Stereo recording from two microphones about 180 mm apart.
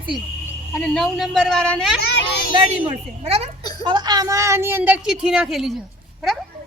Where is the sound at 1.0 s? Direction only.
Centre (ahead or behind).